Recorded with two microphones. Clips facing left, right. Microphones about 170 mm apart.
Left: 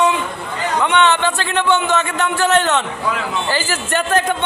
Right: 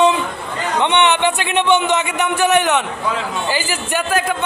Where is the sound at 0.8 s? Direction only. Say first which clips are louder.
Even; 20° right (ahead or behind).